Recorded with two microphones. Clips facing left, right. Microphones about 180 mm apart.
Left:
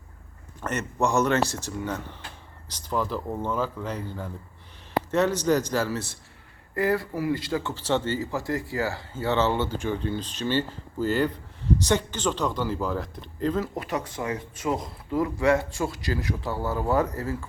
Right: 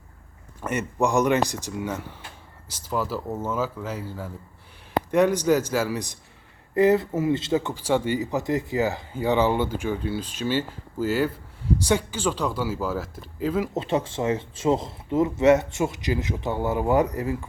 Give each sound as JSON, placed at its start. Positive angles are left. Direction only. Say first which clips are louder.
{"t": 0.6, "sound": "speech", "louder": "right 2 dB", "side_deg": -10}
{"t": 13.7, "sound": "speech", "louder": "right 5 dB", "side_deg": -25}